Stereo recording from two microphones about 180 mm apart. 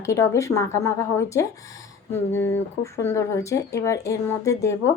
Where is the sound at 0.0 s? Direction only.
15° left (ahead or behind).